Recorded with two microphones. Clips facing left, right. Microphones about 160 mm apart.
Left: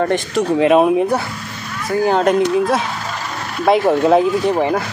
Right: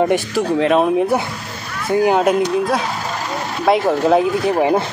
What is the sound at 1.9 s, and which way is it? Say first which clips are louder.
Speech: right 1 dB; 15° right (ahead or behind).